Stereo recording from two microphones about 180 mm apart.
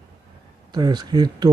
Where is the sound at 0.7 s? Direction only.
25° right (ahead or behind).